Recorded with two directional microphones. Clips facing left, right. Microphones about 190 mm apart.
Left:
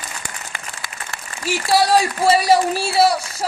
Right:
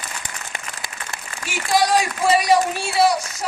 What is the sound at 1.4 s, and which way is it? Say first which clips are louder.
A woman's voice: left 2 dB; 35° left (ahead or behind).